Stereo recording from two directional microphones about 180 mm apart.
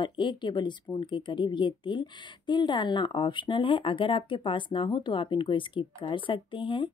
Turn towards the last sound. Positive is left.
turn(degrees=30)  # may be behind; listen again after turning